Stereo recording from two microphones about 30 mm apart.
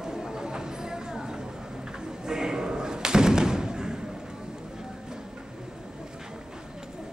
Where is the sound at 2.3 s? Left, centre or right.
Right.